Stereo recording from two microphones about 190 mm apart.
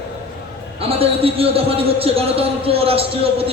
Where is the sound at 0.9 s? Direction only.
30° right (ahead or behind).